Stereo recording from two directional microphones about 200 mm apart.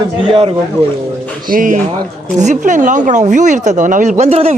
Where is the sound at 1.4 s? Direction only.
40° right (ahead or behind).